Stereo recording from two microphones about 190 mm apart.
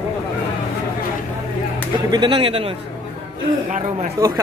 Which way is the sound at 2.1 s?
25° right (ahead or behind).